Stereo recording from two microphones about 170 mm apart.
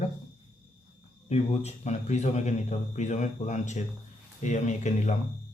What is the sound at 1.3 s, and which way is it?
Speech, 40° left (ahead or behind).